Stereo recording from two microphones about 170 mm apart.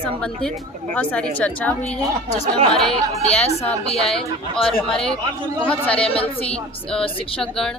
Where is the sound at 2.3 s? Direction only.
40° right (ahead or behind).